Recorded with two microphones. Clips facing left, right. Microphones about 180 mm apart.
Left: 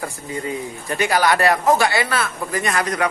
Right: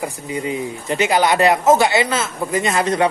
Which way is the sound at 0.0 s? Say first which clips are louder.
Right 3 dB; 20° right (ahead or behind).